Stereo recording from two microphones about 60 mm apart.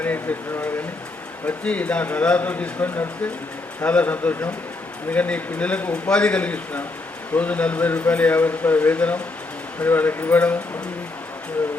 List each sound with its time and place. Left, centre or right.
0.0 s speech: left